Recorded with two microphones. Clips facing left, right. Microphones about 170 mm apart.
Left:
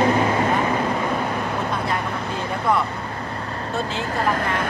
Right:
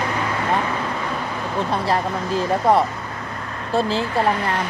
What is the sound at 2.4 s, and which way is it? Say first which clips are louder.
Speech: right 5 dB; 30° right (ahead or behind).